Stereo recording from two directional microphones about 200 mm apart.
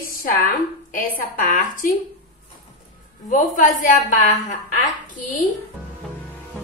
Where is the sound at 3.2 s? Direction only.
40° left (ahead or behind).